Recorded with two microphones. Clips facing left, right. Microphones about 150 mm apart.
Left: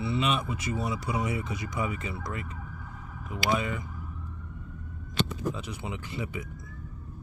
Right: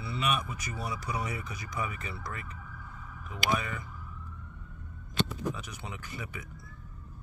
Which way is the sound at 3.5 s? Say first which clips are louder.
Left 4 dB; 20° left (ahead or behind).